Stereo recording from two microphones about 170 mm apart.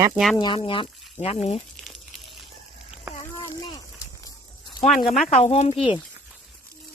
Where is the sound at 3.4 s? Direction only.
20° left (ahead or behind).